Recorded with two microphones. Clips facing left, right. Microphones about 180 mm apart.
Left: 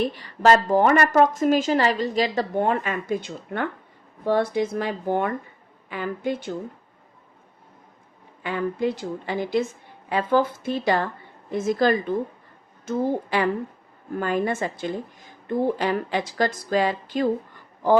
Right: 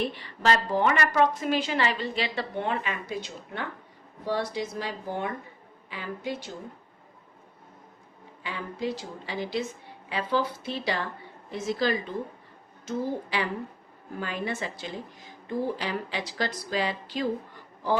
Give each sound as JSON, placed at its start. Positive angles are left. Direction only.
{"t": 0.0, "sound": "a woman's voice", "side_deg": 40}
{"t": 8.4, "sound": "a woman's voice", "side_deg": 55}